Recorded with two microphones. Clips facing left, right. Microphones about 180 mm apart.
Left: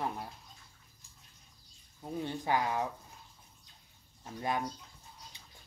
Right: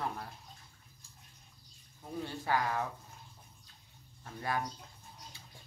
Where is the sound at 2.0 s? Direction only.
20° left (ahead or behind).